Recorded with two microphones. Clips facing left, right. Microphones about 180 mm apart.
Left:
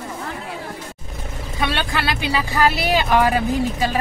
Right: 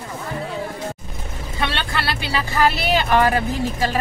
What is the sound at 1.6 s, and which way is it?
Speech, 10° left (ahead or behind).